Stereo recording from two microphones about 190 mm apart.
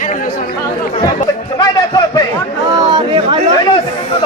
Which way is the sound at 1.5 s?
20° left (ahead or behind).